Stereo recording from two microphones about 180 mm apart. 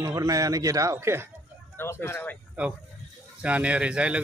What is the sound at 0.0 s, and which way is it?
A man's voice, 20° right (ahead or behind).